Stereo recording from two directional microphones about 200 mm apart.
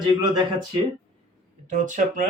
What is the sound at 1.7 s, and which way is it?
Speech, 40° right (ahead or behind).